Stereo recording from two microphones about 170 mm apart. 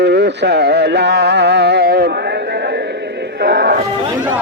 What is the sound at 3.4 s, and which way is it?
Music, 70° right (ahead or behind).